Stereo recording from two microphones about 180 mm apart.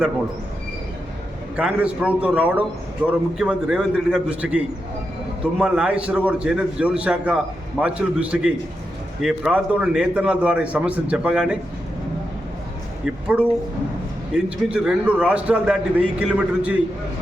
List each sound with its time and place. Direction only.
1.5 s a man's voice: 5° right (ahead or behind)
13.1 s a man's voice: 5° right (ahead or behind)